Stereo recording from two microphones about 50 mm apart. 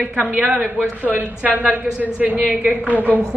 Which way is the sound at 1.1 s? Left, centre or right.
Right.